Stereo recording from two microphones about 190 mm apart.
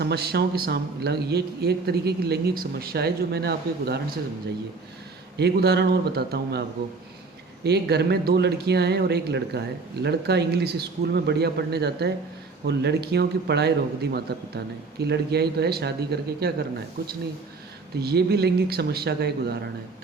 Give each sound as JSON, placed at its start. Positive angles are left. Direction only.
{"t": 0.0, "sound": "speech", "side_deg": -60}
{"t": 5.4, "sound": "speech", "side_deg": -60}